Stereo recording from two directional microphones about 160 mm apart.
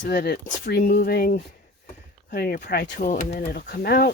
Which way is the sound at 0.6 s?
90° left.